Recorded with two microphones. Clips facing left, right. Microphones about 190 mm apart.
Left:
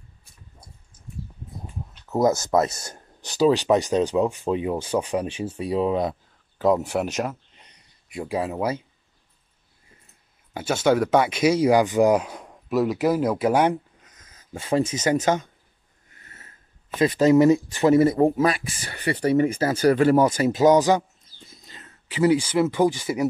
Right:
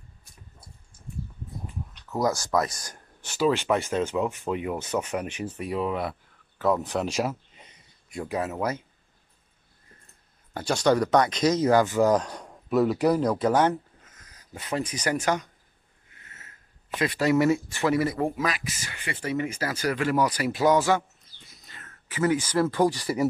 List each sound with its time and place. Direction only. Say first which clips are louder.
2.0 s speech: left 6 dB; 20° left (ahead or behind)
3.2 s speech: left 5 dB; 35° left (ahead or behind)
6.6 s speech: left 4 dB; 15° left (ahead or behind); by 7.8 s 5° right (ahead or behind)
8.2 s speech: left 3 dB; 10° left (ahead or behind)
8.5 s speech: left 3 dB; 30° left (ahead or behind)
10.5 s speech: left 2 dB; 5° left (ahead or behind); by 15.5 s 25° left (ahead or behind)
17.0 s speech: left 6 dB; 20° left (ahead or behind)
21.6 s a sound: left 1 dB; 20° left (ahead or behind)
22.6 s speech: left 3 dB; centre (ahead or behind)